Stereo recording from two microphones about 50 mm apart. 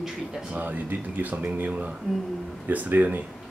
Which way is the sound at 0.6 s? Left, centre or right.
Right.